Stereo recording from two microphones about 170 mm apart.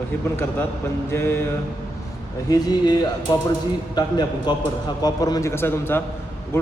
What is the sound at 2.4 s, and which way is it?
A man's voice, 25° left (ahead or behind).